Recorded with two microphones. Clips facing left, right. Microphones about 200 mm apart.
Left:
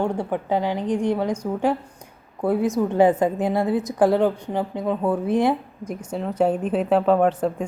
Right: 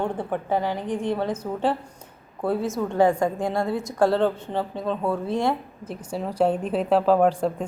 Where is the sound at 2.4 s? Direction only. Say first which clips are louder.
Left 4 dB; 15° left (ahead or behind).